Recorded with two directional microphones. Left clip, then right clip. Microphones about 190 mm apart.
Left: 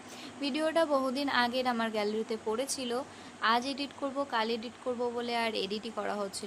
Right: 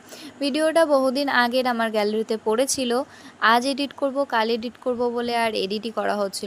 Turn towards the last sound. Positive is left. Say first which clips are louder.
# right 11 dB
turn(degrees=-30)  # may be behind; listen again after turning